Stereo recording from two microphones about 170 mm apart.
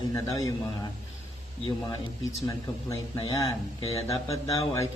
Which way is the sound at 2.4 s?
20° left (ahead or behind).